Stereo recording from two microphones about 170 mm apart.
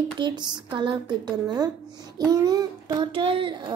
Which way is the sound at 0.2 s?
25° right (ahead or behind).